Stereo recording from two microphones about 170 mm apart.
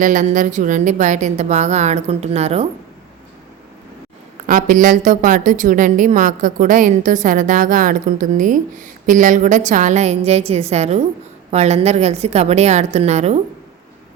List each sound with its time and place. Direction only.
0.0 s a woman's voice: 50° right (ahead or behind)
4.4 s a woman's voice: 50° right (ahead or behind)